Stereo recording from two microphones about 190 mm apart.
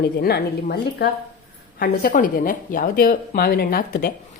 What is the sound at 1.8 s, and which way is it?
A woman's voice, 45° left (ahead or behind).